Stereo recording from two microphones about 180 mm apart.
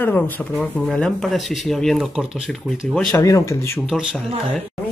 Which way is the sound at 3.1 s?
20° left (ahead or behind).